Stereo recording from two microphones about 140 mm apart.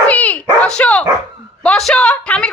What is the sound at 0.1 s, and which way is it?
Dog, 10° left (ahead or behind).